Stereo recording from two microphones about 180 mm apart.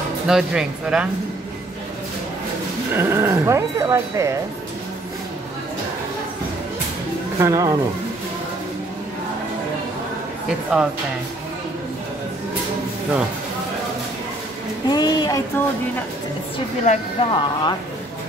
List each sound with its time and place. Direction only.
0.3 s speech: 5° right (ahead or behind)
2.9 s speech: 15° right (ahead or behind)
7.3 s speech: 20° right (ahead or behind)
14.9 s speech: 25° left (ahead or behind)
16.8 s speech: 40° left (ahead or behind)
17.3 s speech: 25° left (ahead or behind)